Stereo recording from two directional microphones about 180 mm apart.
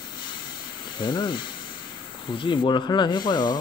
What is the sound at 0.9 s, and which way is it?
Speech, 25° left (ahead or behind).